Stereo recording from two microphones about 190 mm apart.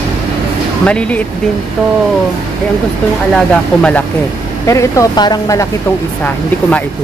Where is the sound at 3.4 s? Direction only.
5° left (ahead or behind).